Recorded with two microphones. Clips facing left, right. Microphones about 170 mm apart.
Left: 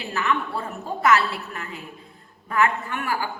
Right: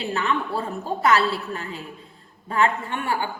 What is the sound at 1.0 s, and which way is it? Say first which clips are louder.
A woman's voice: even; 30° right (ahead or behind).